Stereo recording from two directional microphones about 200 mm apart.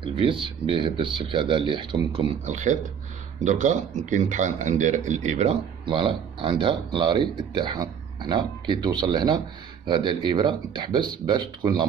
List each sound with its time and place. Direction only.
0.0 s speech: 25° right (ahead or behind)